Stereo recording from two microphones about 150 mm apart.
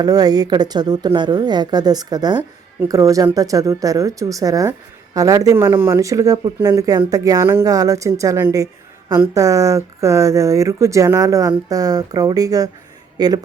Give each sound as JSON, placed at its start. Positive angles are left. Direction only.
{"t": 0.0, "sound": "speech", "side_deg": -25}